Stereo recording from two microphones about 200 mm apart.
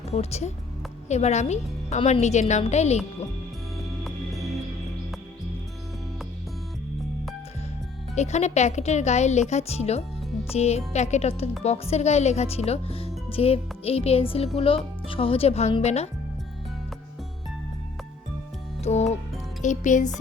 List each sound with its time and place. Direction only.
0.1 s a woman's voice: 30° left (ahead or behind)
8.1 s a woman's voice: 35° left (ahead or behind)
18.8 s a woman's voice: 35° left (ahead or behind)